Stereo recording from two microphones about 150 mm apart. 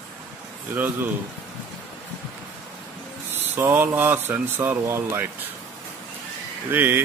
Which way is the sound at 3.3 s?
15° right (ahead or behind).